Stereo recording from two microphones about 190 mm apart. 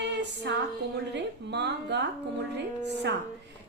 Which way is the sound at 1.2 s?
65° right (ahead or behind).